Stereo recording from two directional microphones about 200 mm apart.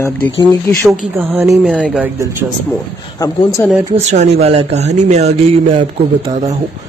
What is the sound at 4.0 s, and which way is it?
A man's voice, 35° right (ahead or behind).